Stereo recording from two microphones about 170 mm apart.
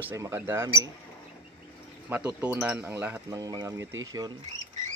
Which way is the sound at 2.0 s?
10° right (ahead or behind).